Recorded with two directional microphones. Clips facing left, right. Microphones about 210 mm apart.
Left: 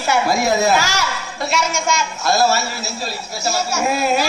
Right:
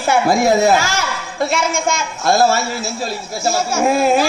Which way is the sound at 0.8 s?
50° right (ahead or behind).